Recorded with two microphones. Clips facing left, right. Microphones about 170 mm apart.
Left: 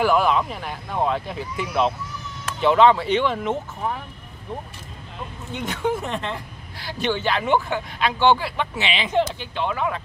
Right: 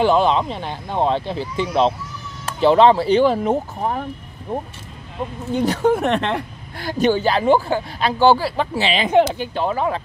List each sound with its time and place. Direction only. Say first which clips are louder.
0.0 s speech: right 3 dB; 25° right (ahead or behind)
5.5 s speech: right 8 dB; 35° right (ahead or behind)
5.9 s speech: right 8 dB; 70° right (ahead or behind)
6.8 s speech: right 7 dB; 45° right (ahead or behind)
9.1 s speech: right 7 dB; 55° right (ahead or behind); by 10.0 s 35° right (ahead or behind)